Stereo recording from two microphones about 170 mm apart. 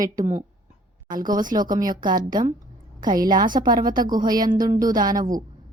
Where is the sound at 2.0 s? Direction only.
25° right (ahead or behind).